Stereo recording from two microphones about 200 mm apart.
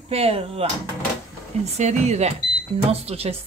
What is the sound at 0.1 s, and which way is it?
Speech, 30° right (ahead or behind).